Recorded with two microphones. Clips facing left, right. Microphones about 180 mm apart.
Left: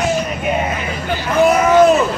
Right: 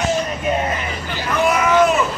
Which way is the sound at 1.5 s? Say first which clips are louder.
Left 4 dB; 35° left (ahead or behind).